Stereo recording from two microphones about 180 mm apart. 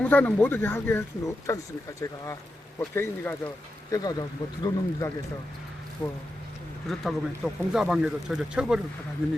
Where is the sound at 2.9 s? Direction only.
10° left (ahead or behind).